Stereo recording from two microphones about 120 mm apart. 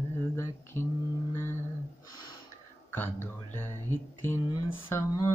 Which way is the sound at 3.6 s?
20° left (ahead or behind).